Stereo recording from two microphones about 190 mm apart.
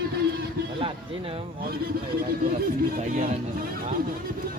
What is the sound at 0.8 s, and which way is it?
Speech, 30° right (ahead or behind).